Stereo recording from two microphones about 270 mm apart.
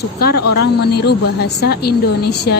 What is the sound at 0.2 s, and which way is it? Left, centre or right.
A woman's voice, left.